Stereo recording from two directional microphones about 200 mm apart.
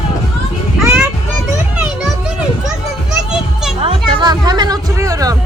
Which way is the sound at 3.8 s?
20° right (ahead or behind).